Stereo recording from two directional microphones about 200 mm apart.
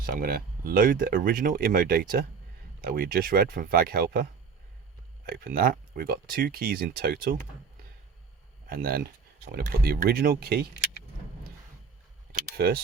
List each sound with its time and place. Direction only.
0.0 s speech: 45° right (ahead or behind)
8.6 s speech: 50° right (ahead or behind)
12.3 s camera: 50° right (ahead or behind)